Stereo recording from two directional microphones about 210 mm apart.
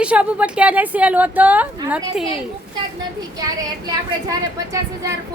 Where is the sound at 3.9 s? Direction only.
15° right (ahead or behind).